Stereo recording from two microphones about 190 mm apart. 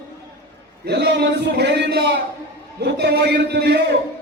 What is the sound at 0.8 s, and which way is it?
A man's voice, 60° right (ahead or behind).